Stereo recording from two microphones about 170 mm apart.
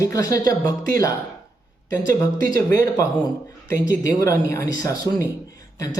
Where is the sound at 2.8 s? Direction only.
20° left (ahead or behind).